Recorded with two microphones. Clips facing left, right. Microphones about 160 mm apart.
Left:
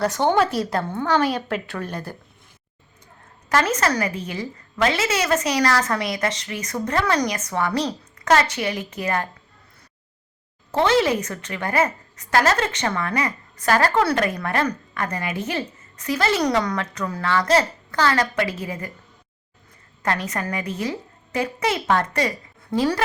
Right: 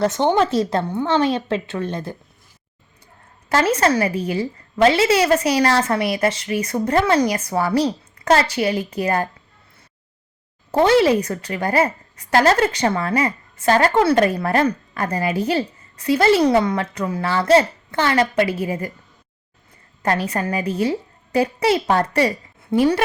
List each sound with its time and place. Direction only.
0.0 s a woman's voice: 20° right (ahead or behind)
3.5 s a woman's voice: 30° right (ahead or behind)
10.7 s a woman's voice: 35° right (ahead or behind)
20.0 s a woman's voice: 30° right (ahead or behind)
22.7 s a woman's voice: 20° right (ahead or behind)